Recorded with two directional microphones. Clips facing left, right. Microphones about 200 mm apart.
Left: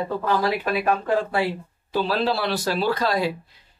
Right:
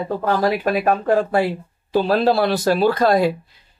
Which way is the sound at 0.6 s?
50° right (ahead or behind).